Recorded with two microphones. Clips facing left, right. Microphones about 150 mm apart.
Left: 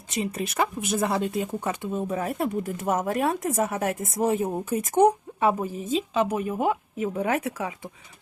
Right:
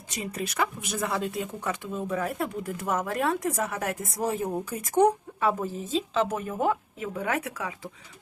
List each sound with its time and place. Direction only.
0.3 s speech: 25° left (ahead or behind)
7.2 s speech: 25° left (ahead or behind)